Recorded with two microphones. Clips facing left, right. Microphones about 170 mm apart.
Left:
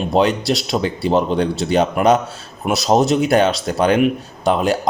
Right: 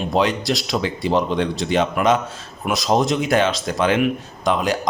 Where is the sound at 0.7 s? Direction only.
30° left (ahead or behind).